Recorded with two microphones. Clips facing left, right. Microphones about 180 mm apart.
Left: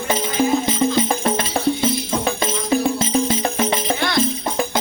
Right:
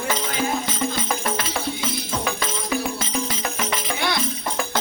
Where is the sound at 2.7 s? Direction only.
30° left (ahead or behind).